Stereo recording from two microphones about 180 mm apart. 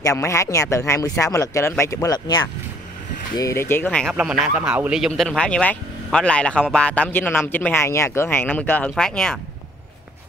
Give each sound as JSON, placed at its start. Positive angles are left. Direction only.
{"t": 0.0, "sound": "speech", "side_deg": 15}
{"t": 4.0, "sound": "speech", "side_deg": -5}